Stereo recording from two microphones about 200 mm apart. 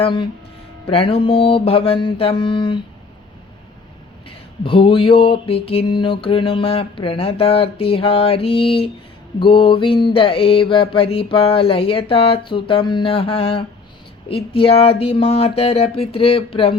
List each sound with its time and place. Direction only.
0.0 s mantra: 25° left (ahead or behind)
4.3 s mantra: 25° left (ahead or behind)